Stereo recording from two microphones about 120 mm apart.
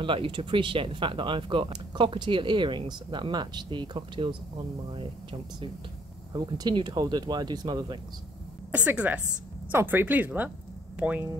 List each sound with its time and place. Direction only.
0.0 s speech: 45° right (ahead or behind)
6.3 s speech: 35° right (ahead or behind)
8.7 s speech: 10° right (ahead or behind)